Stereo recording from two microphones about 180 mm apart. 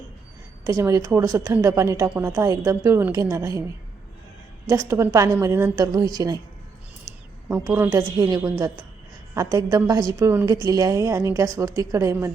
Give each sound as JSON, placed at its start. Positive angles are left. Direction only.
{"t": 0.6, "sound": "a woman's voice", "side_deg": -15}
{"t": 4.7, "sound": "a woman's voice", "side_deg": -15}